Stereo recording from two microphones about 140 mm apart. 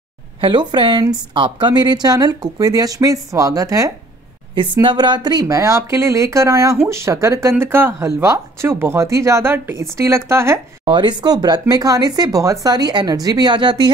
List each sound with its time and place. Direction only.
0.4 s speech: 35° right (ahead or behind)
4.8 s speech: 35° right (ahead or behind)
10.9 s speech: 35° right (ahead or behind)